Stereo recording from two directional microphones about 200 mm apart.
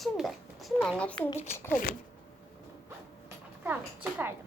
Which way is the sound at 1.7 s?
50° left (ahead or behind).